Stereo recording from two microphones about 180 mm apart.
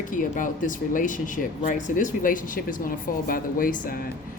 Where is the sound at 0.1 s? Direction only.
45° left (ahead or behind).